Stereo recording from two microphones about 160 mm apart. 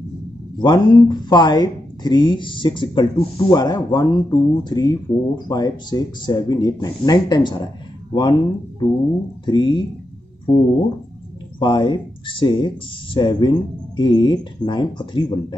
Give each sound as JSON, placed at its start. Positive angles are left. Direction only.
{"t": 0.6, "sound": "speech", "side_deg": 30}
{"t": 11.6, "sound": "speech", "side_deg": 30}